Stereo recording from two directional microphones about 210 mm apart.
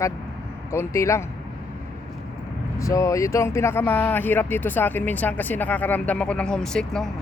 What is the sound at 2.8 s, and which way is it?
Speech, 15° left (ahead or behind).